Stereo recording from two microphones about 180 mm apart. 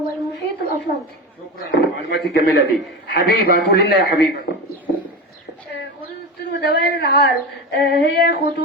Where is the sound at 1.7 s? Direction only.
70° left (ahead or behind).